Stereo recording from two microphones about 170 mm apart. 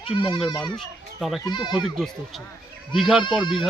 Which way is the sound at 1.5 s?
25° left (ahead or behind).